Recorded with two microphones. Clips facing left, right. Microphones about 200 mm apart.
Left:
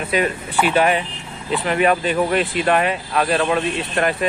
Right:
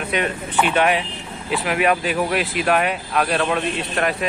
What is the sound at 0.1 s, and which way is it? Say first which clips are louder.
Speech: left 3 dB; 5° left (ahead or behind).